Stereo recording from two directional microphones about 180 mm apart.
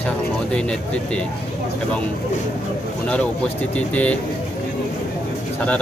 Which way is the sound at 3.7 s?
5° left (ahead or behind).